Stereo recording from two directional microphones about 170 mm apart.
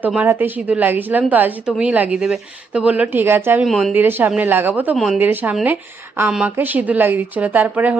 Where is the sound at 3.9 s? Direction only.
10° right (ahead or behind).